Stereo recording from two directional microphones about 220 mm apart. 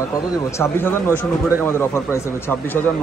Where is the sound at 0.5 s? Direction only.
10° left (ahead or behind).